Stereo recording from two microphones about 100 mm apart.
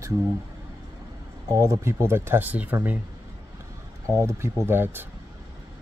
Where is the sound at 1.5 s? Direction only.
30° right (ahead or behind).